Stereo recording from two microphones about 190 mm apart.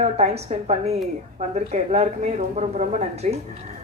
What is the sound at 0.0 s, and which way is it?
A woman's voice, 35° right (ahead or behind).